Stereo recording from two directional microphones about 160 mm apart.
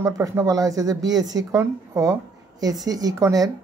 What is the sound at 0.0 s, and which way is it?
A woman's voice, 20° right (ahead or behind).